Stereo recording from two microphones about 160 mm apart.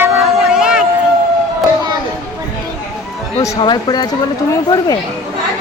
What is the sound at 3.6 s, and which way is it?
Speech, 25° left (ahead or behind).